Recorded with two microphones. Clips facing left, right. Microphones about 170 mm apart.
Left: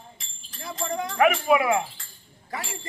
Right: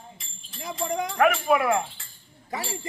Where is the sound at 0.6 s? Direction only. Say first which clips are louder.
Right 1 dB; 20° right (ahead or behind).